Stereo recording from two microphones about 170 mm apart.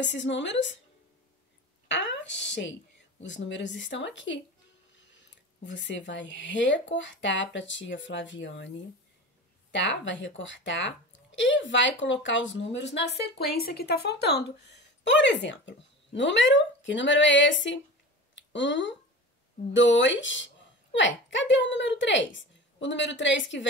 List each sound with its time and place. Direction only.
0.0 s speech: 90° left
1.9 s a woman's voice: 90° left